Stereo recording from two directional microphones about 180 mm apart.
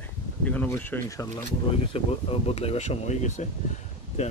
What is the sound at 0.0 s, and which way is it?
Speech, 10° left (ahead or behind).